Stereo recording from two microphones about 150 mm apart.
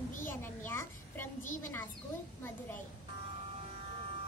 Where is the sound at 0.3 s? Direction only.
15° left (ahead or behind).